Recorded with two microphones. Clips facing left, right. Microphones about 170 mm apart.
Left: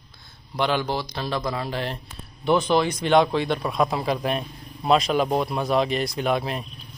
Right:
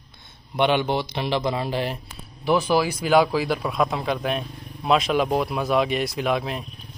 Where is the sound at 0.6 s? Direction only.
20° right (ahead or behind).